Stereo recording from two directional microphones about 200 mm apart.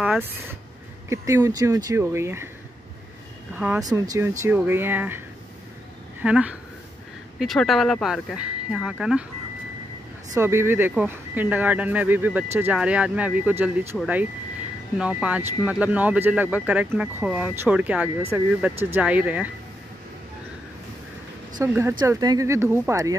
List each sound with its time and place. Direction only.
0.0 s speech: 5° right (ahead or behind)
3.5 s speech: 10° right (ahead or behind)
6.2 s speech: 5° right (ahead or behind)
10.3 s speech: 10° right (ahead or behind)
21.5 s speech: 10° right (ahead or behind)